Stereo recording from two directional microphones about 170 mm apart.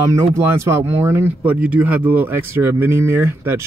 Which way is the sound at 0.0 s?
15° right (ahead or behind).